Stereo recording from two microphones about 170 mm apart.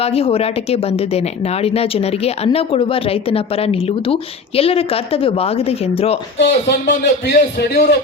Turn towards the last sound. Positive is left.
turn(degrees=75)  # may be behind; listen again after turning